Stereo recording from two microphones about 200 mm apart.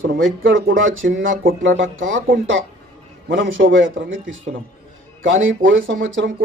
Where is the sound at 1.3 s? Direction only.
45° right (ahead or behind).